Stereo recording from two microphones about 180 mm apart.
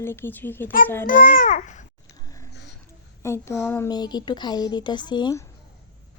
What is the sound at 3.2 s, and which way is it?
Speech, 15° left (ahead or behind).